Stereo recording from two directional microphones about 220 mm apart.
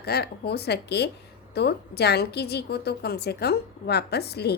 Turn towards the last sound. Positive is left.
turn(degrees=50)  # may be behind; listen again after turning